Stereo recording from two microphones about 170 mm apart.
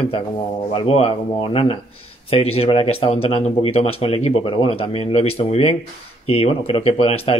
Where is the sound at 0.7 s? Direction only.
35° left (ahead or behind).